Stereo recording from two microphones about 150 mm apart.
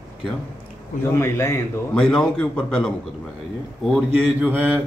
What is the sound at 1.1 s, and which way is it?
Speech, 20° left (ahead or behind).